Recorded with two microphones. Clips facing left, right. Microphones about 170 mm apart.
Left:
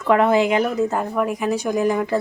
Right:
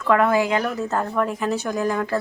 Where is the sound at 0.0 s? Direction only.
20° left (ahead or behind).